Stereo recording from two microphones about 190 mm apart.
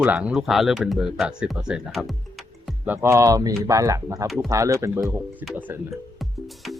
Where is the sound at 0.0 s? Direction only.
5° right (ahead or behind).